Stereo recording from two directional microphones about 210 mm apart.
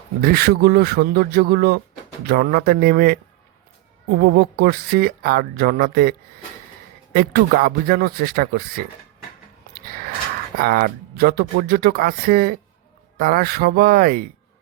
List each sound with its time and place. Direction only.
0.2 s speech: 45° right (ahead or behind)
9.7 s a sound: 45° right (ahead or behind)
10.6 s speech: 45° right (ahead or behind)